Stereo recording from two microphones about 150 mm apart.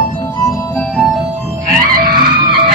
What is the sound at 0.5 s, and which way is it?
Music, 20° left (ahead or behind).